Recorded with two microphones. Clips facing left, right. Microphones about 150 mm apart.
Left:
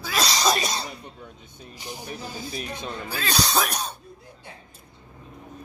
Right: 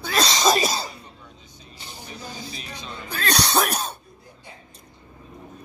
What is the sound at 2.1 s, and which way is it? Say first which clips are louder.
Music: left 1 dB; 50° left (ahead or behind).